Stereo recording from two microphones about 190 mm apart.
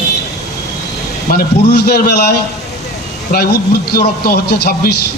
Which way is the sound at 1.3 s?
55° left (ahead or behind).